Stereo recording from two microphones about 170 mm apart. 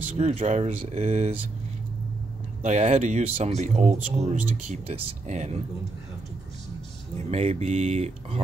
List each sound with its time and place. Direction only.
0.1 s speech: 40° right (ahead or behind)
2.6 s speech: 45° right (ahead or behind)
7.2 s speech: 40° right (ahead or behind)